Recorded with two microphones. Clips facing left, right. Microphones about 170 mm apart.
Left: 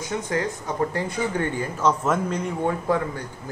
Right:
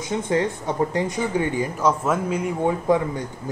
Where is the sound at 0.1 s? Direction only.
25° right (ahead or behind).